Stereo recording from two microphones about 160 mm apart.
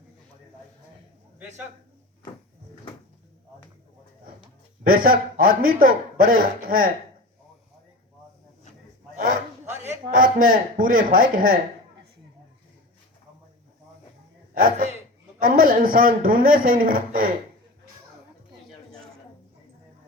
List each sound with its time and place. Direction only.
4.8 s a man's voice: 65° right (ahead or behind)
9.1 s a sound: 50° right (ahead or behind)
15.4 s a man's voice: 65° right (ahead or behind)